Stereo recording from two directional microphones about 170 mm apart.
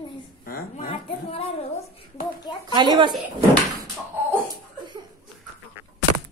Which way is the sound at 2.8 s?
25° right (ahead or behind).